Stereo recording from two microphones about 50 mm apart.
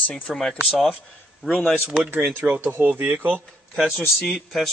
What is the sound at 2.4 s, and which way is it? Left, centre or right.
Speech, right.